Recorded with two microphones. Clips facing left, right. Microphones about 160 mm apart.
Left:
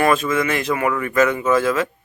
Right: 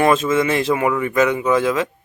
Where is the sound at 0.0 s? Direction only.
25° right (ahead or behind).